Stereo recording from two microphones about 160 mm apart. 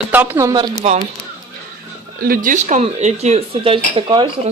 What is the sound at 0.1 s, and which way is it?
Speech, 10° right (ahead or behind).